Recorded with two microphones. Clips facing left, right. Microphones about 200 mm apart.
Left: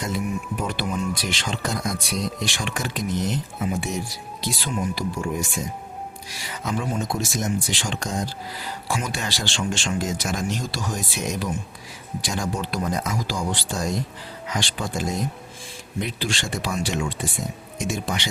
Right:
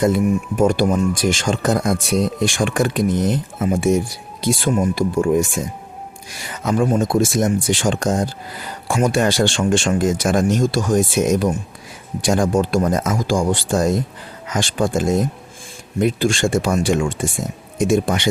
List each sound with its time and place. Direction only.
0.0 s speech: 50° right (ahead or behind)